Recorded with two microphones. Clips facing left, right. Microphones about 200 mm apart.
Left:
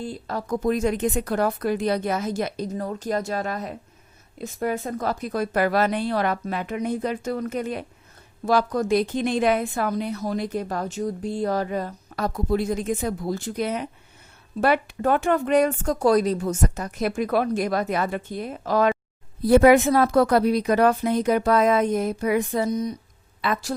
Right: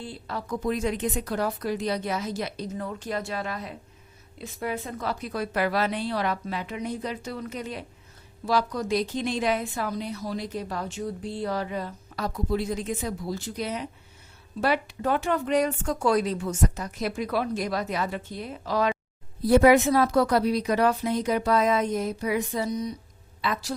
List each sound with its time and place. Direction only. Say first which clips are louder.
0.0 s a woman's voice: left 5 dB; 45° left (ahead or behind)